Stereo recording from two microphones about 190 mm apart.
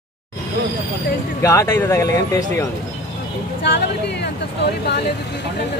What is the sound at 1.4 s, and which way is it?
Speech, 15° left (ahead or behind).